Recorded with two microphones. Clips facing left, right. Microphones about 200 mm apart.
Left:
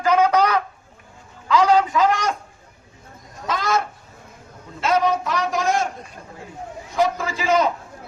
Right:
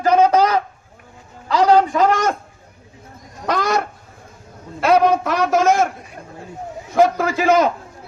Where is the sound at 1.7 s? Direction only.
45° right (ahead or behind).